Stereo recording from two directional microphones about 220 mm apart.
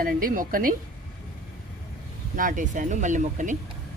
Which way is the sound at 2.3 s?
35° right (ahead or behind).